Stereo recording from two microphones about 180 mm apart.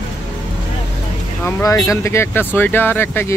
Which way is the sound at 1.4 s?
20° left (ahead or behind).